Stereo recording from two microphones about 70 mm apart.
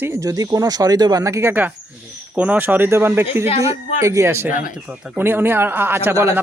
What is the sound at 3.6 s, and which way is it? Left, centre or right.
Speech, right.